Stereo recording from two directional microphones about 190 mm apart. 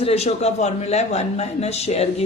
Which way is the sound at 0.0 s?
35° left (ahead or behind).